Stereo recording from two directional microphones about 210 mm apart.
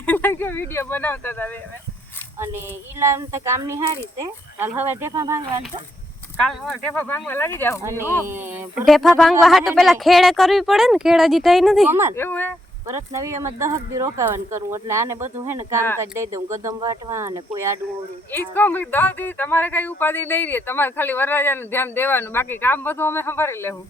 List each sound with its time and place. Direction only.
0.0 s a sound: 10° left (ahead or behind)
3.0 s speech: 15° right (ahead or behind)
6.4 s speech: 5° left (ahead or behind)
8.2 s speech: 10° right (ahead or behind)
8.9 s speech: centre (ahead or behind)
12.1 s speech: 10° left (ahead or behind)
12.9 s speech: 15° right (ahead or behind)
18.3 s speech: 10° left (ahead or behind)